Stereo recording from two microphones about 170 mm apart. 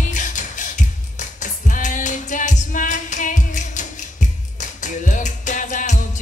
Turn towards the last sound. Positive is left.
turn(degrees=50)  # may be behind; listen again after turning